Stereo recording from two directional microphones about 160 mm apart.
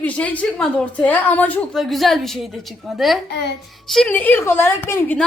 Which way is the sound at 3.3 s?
90° left.